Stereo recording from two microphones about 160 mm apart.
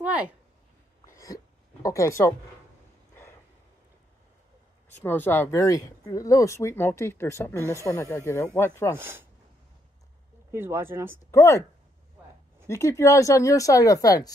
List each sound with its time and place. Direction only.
0.0 s a sound: 10° right (ahead or behind)
1.0 s a sound: 20° left (ahead or behind)
5.0 s speech: 15° left (ahead or behind)
7.5 s speech: 15° right (ahead or behind)
7.8 s speech: 15° left (ahead or behind)
8.9 s speech: 15° right (ahead or behind)
10.5 s speech: 15° right (ahead or behind)
11.3 s speech: 20° left (ahead or behind)
12.6 s speech: 20° left (ahead or behind)